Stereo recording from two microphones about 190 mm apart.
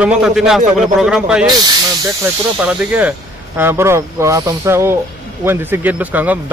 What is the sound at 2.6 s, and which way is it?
Speech, 5° right (ahead or behind).